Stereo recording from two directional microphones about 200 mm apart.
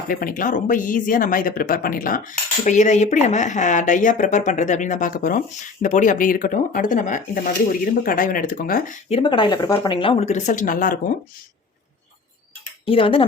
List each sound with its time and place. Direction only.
0.1 s speech: 45° left (ahead or behind)
12.8 s speech: 25° left (ahead or behind)